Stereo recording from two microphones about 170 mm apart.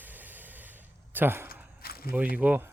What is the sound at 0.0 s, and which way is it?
Snort, 10° right (ahead or behind).